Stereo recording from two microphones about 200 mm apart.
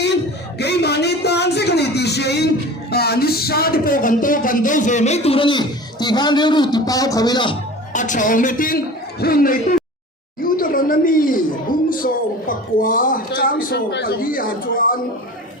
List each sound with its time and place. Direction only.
0.6 s a sound: 55° left (ahead or behind)
2.9 s speech: 50° left (ahead or behind); by 7.5 s 20° left (ahead or behind)
7.9 s speech: 40° left (ahead or behind)